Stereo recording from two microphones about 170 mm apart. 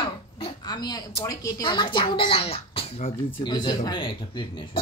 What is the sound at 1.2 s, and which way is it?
Speech, 20° left (ahead or behind).